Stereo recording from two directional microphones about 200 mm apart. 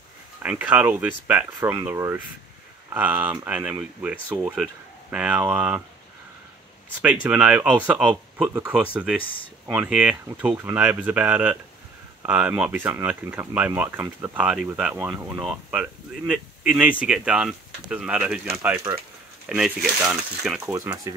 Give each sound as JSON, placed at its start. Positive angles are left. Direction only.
{"t": 0.4, "sound": "speech", "side_deg": -5}
{"t": 7.2, "sound": "speech", "side_deg": -5}
{"t": 20.6, "sound": "speech", "side_deg": -15}